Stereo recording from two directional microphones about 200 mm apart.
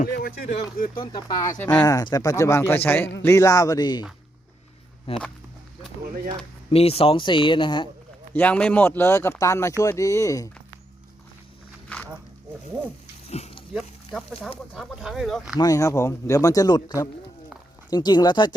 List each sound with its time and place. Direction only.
0.0 s speech: 50° left (ahead or behind)
0.9 s speech: 20° left (ahead or behind)
1.8 s speech: 20° left (ahead or behind)
5.1 s speech: 30° left (ahead or behind)
6.7 s speech: 30° left (ahead or behind)
8.3 s speech: 10° left (ahead or behind)
13.3 s dog: 30° left (ahead or behind)
13.7 s speech: centre (ahead or behind)
15.5 s speech: 15° left (ahead or behind)